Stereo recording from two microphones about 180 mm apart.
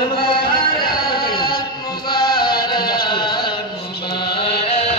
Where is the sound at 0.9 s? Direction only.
25° left (ahead or behind).